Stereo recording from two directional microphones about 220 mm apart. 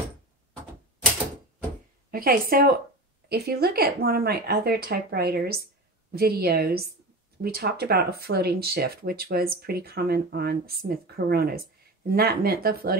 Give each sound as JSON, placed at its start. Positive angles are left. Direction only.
{"t": 2.0, "sound": "a woman's voice", "side_deg": -40}